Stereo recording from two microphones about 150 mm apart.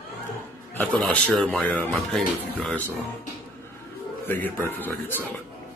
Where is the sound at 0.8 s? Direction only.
10° left (ahead or behind).